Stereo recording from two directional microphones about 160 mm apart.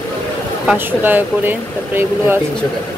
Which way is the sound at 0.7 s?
10° right (ahead or behind).